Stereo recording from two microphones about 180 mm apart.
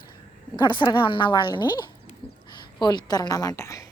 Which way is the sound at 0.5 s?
25° left (ahead or behind).